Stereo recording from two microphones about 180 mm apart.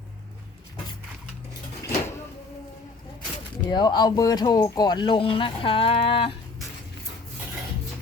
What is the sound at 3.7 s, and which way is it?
Speech, 25° left (ahead or behind).